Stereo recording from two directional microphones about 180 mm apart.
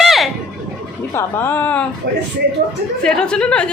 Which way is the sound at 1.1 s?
15° left (ahead or behind).